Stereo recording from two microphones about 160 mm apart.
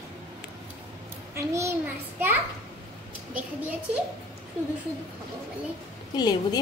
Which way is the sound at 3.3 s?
10° right (ahead or behind).